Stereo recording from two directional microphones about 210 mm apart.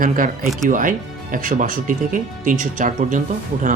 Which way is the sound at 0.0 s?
40° right (ahead or behind).